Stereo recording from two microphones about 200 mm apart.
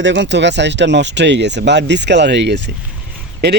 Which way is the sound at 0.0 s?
65° right (ahead or behind).